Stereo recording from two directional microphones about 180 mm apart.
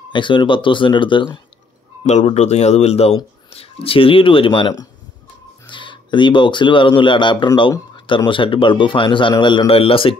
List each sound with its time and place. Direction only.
0.1 s speech: 25° left (ahead or behind)
2.0 s speech: 40° left (ahead or behind)